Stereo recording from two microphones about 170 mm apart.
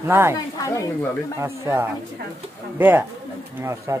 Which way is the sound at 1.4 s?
15° right (ahead or behind).